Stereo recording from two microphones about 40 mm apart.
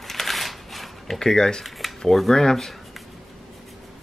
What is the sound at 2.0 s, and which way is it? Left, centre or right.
Speech, centre.